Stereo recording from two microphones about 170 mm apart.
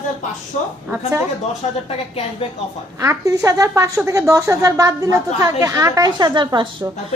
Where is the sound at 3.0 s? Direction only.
20° right (ahead or behind).